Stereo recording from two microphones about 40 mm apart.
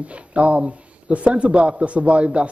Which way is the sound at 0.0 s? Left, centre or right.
Right.